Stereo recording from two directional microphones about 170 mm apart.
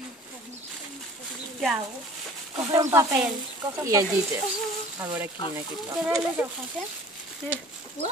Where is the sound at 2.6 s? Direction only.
15° right (ahead or behind).